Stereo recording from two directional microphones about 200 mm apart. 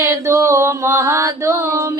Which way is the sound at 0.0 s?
15° right (ahead or behind).